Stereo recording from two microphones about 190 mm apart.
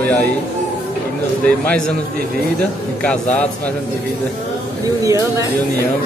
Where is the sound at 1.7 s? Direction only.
5° left (ahead or behind).